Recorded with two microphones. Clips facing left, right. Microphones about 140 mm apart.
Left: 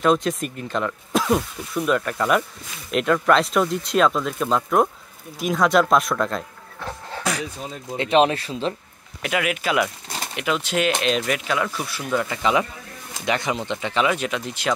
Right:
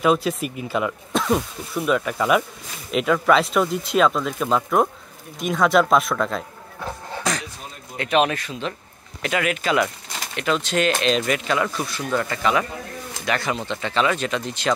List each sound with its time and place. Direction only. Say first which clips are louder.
0.0 s speech: even; 5° right (ahead or behind)
7.3 s a sound: even; 10° left (ahead or behind)
8.0 s speech: left 2 dB; 30° left (ahead or behind)
9.2 s speech: right 1 dB; 5° left (ahead or behind)
13.2 s speech: left 1 dB; 20° left (ahead or behind)